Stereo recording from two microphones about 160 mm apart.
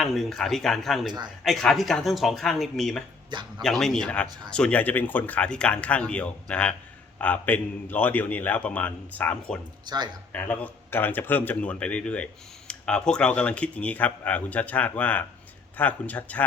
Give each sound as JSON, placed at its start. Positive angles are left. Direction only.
{"t": 0.0, "sound": "a man's voice", "side_deg": 0}
{"t": 9.8, "sound": "speech", "side_deg": -25}
{"t": 10.3, "sound": "a man's voice", "side_deg": 10}